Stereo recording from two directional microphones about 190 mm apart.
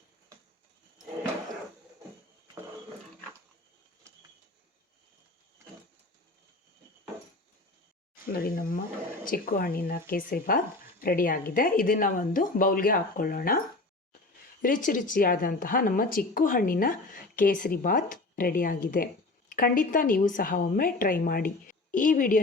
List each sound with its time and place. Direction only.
8.3 s a woman's voice: 50° left (ahead or behind)
14.6 s a woman's voice: 45° left (ahead or behind)